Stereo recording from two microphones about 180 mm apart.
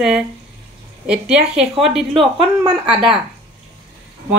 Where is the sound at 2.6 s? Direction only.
30° right (ahead or behind).